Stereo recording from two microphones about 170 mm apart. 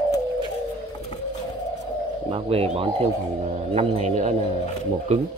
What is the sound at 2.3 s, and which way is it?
Speech, 35° right (ahead or behind).